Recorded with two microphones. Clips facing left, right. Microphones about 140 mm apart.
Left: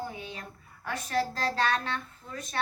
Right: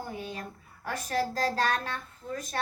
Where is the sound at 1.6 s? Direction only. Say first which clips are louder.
Even; 45° right (ahead or behind).